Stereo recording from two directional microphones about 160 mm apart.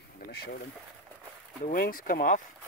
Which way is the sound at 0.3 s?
75° left (ahead or behind).